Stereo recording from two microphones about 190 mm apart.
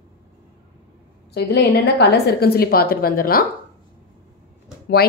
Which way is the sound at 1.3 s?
60° left (ahead or behind).